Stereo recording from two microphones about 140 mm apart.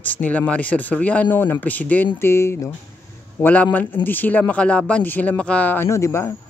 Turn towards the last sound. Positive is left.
turn(degrees=20)  # may be behind; listen again after turning